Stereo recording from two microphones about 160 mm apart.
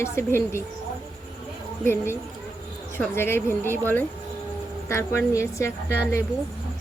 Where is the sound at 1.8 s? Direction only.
15° left (ahead or behind).